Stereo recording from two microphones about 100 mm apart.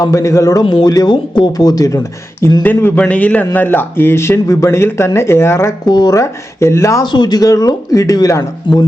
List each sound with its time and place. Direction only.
0.0 s speech: 35° left (ahead or behind)
0.6 s speech: 55° left (ahead or behind); by 2.0 s 35° left (ahead or behind)
2.6 s a man's voice: 20° left (ahead or behind)
5.8 s speech: 45° left (ahead or behind)
6.1 s a man's voice: 30° left (ahead or behind)
7.0 s speech: 45° left (ahead or behind)
8.7 s speech: 55° left (ahead or behind)